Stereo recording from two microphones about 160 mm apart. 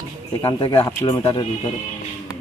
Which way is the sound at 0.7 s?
15° left (ahead or behind).